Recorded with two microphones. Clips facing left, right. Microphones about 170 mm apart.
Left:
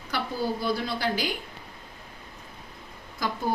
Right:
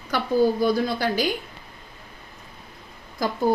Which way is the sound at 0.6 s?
45° right (ahead or behind).